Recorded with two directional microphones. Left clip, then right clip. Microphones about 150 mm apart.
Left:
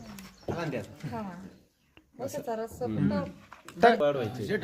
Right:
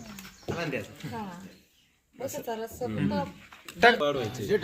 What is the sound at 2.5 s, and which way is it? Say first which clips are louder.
Speech: left 1 dB; 20° right (ahead or behind).